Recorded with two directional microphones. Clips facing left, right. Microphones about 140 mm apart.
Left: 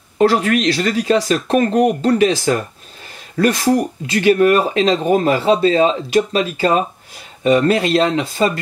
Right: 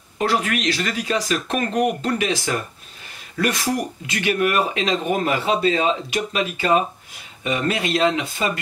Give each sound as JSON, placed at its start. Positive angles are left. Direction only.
{"t": 0.2, "sound": "speech", "side_deg": 30}